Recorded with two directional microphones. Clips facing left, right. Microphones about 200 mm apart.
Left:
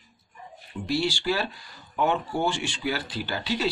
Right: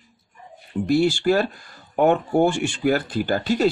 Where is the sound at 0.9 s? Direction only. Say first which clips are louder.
Right 8 dB; 50° right (ahead or behind).